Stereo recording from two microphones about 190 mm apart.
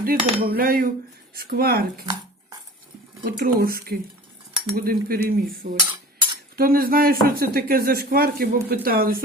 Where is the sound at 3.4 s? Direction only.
50° right (ahead or behind).